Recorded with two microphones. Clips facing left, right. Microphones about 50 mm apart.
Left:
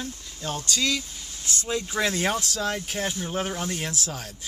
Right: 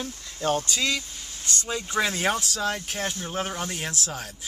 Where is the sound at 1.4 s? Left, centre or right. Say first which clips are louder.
Left 1 dB; centre.